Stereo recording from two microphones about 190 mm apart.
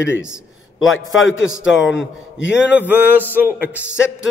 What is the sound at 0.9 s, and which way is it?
Speech, 90° left.